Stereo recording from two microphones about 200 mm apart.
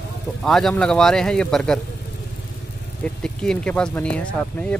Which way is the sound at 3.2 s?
5° left (ahead or behind).